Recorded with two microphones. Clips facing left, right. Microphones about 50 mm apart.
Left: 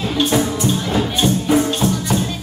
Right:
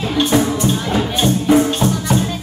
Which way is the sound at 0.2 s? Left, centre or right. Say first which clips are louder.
Right 2 dB; centre.